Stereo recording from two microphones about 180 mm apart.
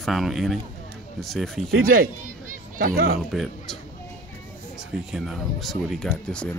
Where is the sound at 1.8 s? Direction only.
55° right (ahead or behind).